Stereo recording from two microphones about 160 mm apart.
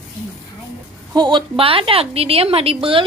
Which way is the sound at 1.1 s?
30° right (ahead or behind).